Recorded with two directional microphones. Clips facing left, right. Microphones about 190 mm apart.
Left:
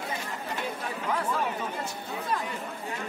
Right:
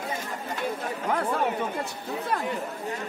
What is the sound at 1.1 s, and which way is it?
Speech, 55° right (ahead or behind).